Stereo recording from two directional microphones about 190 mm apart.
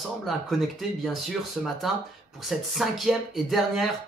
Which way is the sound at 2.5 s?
Centre (ahead or behind).